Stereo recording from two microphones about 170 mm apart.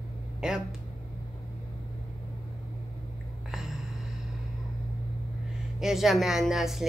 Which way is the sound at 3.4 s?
Centre (ahead or behind).